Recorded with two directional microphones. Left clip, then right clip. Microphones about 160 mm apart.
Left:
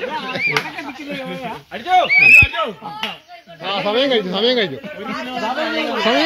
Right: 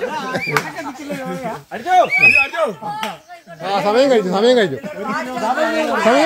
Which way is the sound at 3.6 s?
55° right (ahead or behind).